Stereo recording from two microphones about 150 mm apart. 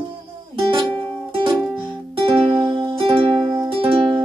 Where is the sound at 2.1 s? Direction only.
35° right (ahead or behind).